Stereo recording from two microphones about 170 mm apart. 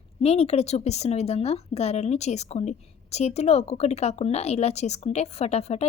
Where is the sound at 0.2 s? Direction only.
35° left (ahead or behind).